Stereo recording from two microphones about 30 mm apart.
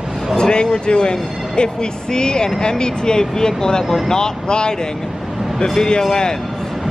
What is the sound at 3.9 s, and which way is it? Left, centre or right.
Speech, centre.